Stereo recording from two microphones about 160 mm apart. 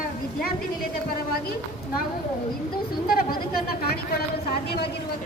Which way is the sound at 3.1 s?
70° left (ahead or behind).